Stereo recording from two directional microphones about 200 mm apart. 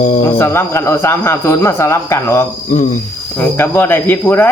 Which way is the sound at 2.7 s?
35° left (ahead or behind).